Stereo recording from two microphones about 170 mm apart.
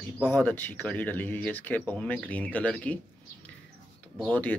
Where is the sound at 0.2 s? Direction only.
10° left (ahead or behind).